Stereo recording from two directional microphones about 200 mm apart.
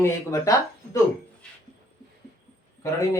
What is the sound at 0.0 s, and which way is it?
Speech, 15° left (ahead or behind).